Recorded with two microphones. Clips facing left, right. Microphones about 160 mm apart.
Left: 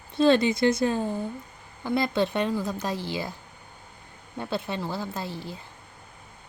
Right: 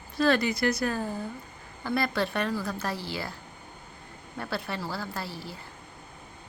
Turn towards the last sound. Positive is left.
turn(degrees=20)  # may be behind; listen again after turning